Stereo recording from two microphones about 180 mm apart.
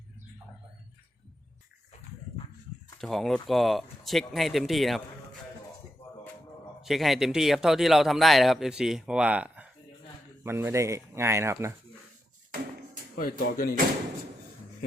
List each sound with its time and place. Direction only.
3.0 s a man's voice: centre (ahead or behind)
6.8 s a man's voice: centre (ahead or behind)
13.1 s speech: 55° left (ahead or behind)